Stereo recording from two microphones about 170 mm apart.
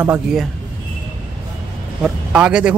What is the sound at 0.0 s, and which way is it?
Speech, 5° right (ahead or behind).